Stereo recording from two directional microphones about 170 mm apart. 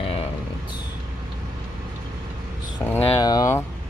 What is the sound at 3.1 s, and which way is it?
Speech, 25° left (ahead or behind).